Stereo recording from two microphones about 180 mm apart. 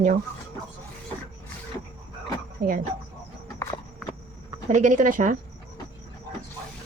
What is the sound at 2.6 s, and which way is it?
Speech, 55° right (ahead or behind).